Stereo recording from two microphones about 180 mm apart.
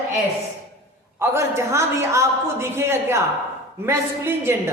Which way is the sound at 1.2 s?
15° right (ahead or behind).